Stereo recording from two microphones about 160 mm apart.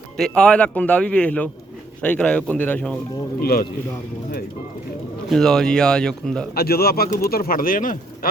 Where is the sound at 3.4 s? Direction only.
70° left (ahead or behind).